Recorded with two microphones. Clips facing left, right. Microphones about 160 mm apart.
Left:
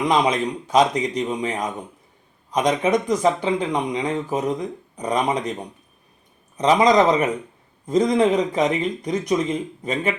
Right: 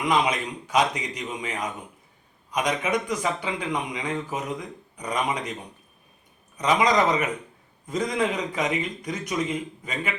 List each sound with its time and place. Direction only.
0.1 s a man's voice: 35° left (ahead or behind)
2.6 s a man's voice: 35° left (ahead or behind)
6.6 s a man's voice: 35° left (ahead or behind)